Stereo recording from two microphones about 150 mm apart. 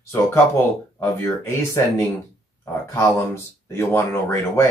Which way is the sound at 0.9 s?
20° left (ahead or behind).